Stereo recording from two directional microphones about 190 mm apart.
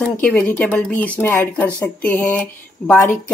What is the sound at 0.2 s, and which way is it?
Speech, 10° left (ahead or behind).